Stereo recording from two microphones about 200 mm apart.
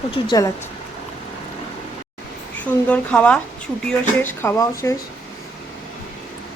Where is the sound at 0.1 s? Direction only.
20° left (ahead or behind).